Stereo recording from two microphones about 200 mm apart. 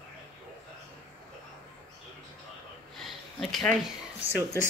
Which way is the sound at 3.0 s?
Centre (ahead or behind).